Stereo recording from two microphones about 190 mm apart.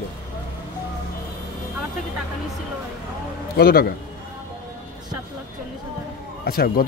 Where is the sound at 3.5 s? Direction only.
55° left (ahead or behind).